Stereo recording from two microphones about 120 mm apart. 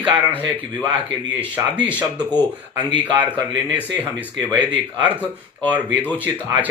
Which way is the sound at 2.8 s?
40° right (ahead or behind).